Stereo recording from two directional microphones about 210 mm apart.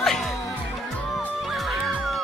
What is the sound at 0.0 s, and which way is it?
Music, centre (ahead or behind).